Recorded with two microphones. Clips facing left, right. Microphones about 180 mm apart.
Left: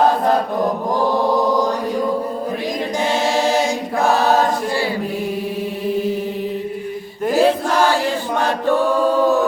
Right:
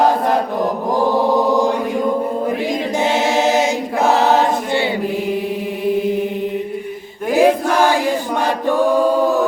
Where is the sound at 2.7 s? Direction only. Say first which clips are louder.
Right 2 dB; 20° right (ahead or behind).